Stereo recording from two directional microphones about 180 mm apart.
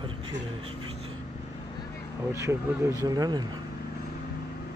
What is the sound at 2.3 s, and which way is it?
Speech, 15° right (ahead or behind).